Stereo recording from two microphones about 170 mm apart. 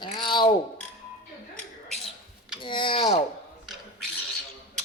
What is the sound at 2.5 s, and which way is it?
Speech, 30° left (ahead or behind).